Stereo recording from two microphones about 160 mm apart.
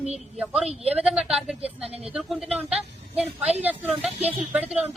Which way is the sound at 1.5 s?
40° right (ahead or behind).